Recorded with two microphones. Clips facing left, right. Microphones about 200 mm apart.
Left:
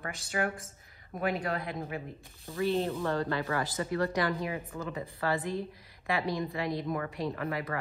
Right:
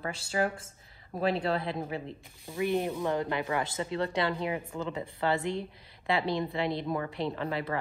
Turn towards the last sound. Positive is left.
turn(degrees=-30)  # may be behind; listen again after turning